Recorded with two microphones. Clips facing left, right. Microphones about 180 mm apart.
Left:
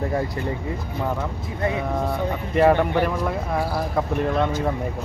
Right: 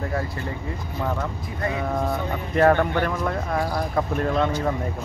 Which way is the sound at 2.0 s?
5° left (ahead or behind).